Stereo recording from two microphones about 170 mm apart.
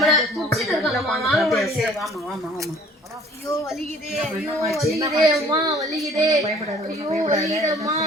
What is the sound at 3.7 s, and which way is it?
Speech, centre (ahead or behind).